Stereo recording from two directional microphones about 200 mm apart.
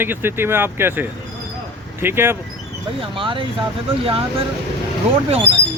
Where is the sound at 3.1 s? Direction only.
25° right (ahead or behind).